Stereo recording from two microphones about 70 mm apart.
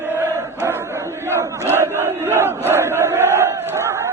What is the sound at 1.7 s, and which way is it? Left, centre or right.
Crowd, right.